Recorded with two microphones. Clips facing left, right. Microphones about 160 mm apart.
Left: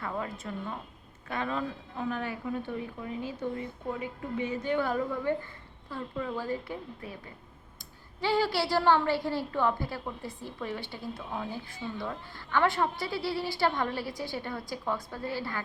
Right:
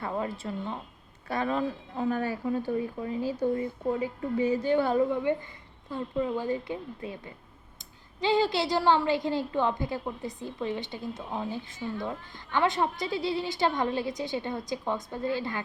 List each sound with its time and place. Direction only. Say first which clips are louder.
0.0 s a woman's voice: right 3 dB; 30° right (ahead or behind)
1.3 s a woman's voice: right 4 dB; 40° right (ahead or behind); by 7.1 s 20° right (ahead or behind)
8.2 s a woman's voice: right 2 dB; 20° right (ahead or behind)